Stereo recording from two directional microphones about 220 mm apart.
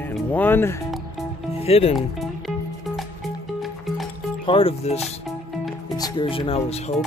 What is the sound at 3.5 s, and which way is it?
Music, centre (ahead or behind).